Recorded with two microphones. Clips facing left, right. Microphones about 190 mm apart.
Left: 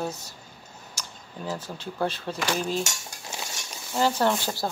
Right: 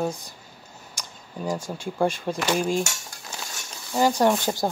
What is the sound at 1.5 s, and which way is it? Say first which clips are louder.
Speech: right 4 dB; 10° right (ahead or behind).